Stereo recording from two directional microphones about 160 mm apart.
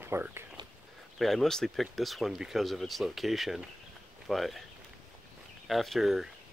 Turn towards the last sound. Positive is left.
turn(degrees=0)  # may be behind; listen again after turning